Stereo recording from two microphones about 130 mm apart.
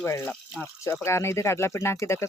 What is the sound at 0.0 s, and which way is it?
Speech, 15° left (ahead or behind).